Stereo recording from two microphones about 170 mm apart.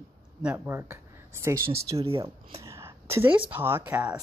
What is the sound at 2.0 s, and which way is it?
Speech, 35° right (ahead or behind).